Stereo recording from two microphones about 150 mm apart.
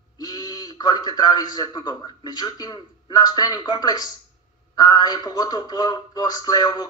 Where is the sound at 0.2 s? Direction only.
25° left (ahead or behind).